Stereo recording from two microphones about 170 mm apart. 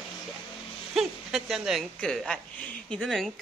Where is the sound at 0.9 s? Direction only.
5° right (ahead or behind).